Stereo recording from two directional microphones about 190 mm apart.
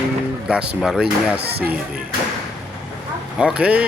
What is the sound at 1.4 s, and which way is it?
Speech, 60° right (ahead or behind).